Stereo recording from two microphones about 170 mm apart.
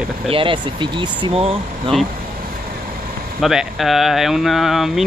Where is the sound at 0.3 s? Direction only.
30° right (ahead or behind).